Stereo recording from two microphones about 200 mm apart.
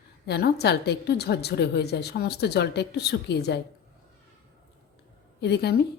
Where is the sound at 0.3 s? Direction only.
55° left (ahead or behind).